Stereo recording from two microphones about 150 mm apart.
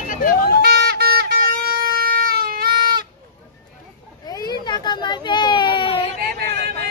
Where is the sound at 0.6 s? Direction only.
90° right.